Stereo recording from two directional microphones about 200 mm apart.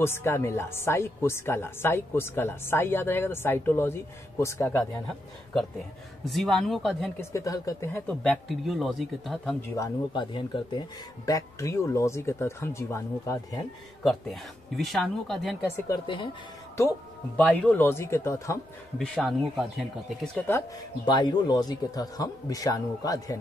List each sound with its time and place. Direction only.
0.0 s speech: 10° left (ahead or behind)
5.5 s speech: centre (ahead or behind)
7.2 s speech: 15° left (ahead or behind); by 9.6 s centre (ahead or behind)
9.6 s speech: 20° left (ahead or behind)
14.0 s speech: centre (ahead or behind)
15.9 s a man's voice: 25° left (ahead or behind)
17.4 s speech: 5° left (ahead or behind)
18.9 s speech: centre (ahead or behind)
20.4 s a man's voice: 15° left (ahead or behind)